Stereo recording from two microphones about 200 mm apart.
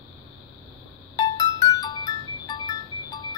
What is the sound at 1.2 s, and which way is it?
Music, 20° left (ahead or behind).